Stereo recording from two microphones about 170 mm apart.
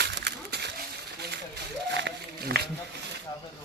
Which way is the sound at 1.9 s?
90° right.